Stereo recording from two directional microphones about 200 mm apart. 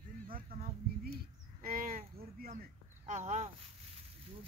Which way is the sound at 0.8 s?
50° right (ahead or behind).